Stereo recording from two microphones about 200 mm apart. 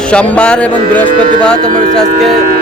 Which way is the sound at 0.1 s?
5° left (ahead or behind).